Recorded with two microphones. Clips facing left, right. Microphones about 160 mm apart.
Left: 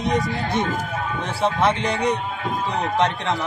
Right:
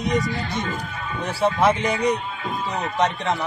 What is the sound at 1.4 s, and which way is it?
Speech, 5° right (ahead or behind).